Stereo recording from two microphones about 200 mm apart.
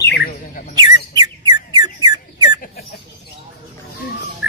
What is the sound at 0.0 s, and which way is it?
Bird, 55° left (ahead or behind).